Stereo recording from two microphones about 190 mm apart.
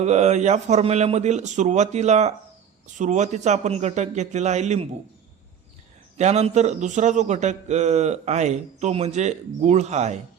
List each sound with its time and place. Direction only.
0.0 s a man's voice: 35° right (ahead or behind)
6.1 s a man's voice: 35° right (ahead or behind)